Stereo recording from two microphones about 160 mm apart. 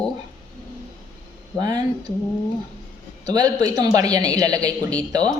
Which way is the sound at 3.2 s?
20° right (ahead or behind).